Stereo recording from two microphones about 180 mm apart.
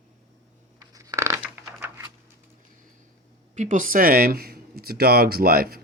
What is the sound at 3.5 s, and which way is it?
Speech, 45° right (ahead or behind).